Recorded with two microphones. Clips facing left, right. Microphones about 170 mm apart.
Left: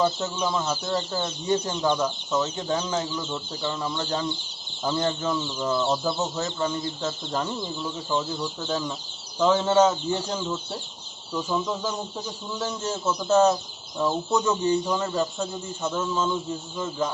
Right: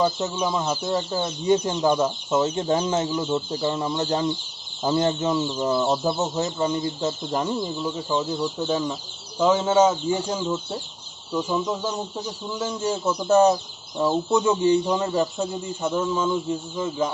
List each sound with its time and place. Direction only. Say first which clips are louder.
0.2 s speech: right 2 dB; 15° right (ahead or behind)